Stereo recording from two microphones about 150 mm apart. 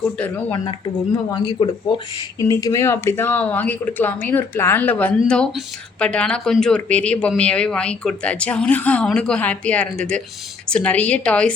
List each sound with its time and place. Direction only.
0.2 s speech: 10° left (ahead or behind)
1.5 s speech: 30° left (ahead or behind); by 11.5 s 5° left (ahead or behind)